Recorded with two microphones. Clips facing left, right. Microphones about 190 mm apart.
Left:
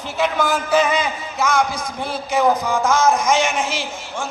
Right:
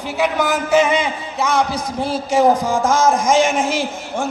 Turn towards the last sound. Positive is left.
turn(degrees=-50)  # may be behind; listen again after turning